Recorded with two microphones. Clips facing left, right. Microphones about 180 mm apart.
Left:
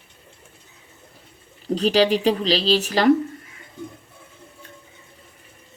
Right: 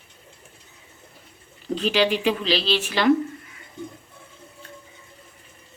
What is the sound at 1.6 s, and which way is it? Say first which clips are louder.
Speech: left 3 dB; 40° left (ahead or behind).